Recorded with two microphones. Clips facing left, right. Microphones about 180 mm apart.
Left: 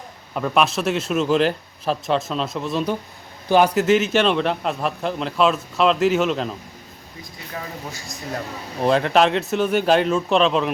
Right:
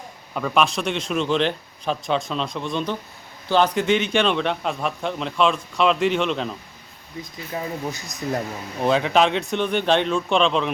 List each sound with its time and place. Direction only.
0.3 s a man's voice: centre (ahead or behind)
7.5 s speech: 20° right (ahead or behind)
8.8 s a man's voice: centre (ahead or behind)